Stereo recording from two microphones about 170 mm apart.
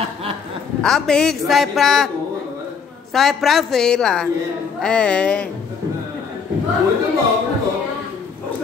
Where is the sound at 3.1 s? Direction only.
Centre (ahead or behind).